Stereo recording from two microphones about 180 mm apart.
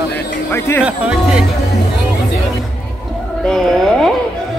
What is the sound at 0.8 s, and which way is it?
Speech, 5° right (ahead or behind).